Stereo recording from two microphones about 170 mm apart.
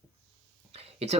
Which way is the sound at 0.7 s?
35° right (ahead or behind).